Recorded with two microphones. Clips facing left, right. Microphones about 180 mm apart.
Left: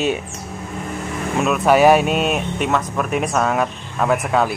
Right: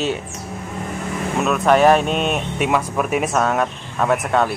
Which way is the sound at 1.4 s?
5° left (ahead or behind).